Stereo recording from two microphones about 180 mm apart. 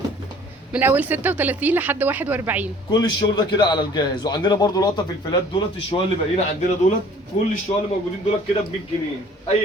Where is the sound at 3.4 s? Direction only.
25° left (ahead or behind).